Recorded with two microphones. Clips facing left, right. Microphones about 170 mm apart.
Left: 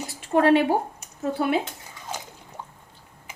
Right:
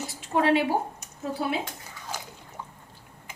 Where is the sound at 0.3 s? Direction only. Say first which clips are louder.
Left 4 dB; 50° left (ahead or behind).